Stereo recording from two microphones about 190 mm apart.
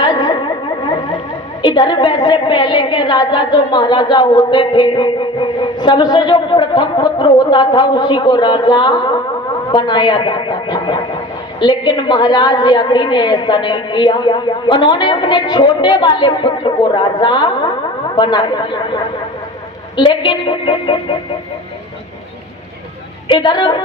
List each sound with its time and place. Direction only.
0.0 s a sound: 20° left (ahead or behind)
1.6 s a woman's voice: 25° left (ahead or behind)
20.2 s a woman's voice: 25° left (ahead or behind)
23.3 s a woman's voice: 25° left (ahead or behind)